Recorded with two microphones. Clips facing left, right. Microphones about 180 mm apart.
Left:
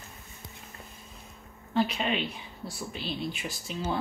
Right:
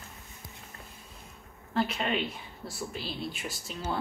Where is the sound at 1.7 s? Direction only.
Centre (ahead or behind).